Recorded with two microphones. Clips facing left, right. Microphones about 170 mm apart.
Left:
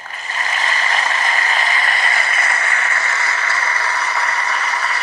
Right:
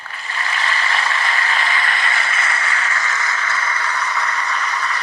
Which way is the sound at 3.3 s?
70° left (ahead or behind).